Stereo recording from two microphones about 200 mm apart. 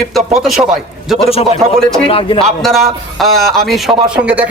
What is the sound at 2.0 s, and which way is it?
Speech, 25° left (ahead or behind).